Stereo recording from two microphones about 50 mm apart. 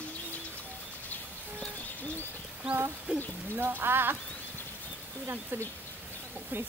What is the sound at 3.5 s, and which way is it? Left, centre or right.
Speech, right.